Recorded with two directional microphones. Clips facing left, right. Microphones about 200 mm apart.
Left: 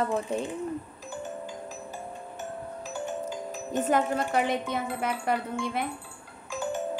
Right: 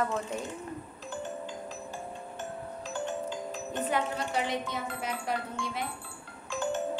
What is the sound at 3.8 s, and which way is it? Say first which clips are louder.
A woman's voice: left 6 dB; 50° left (ahead or behind).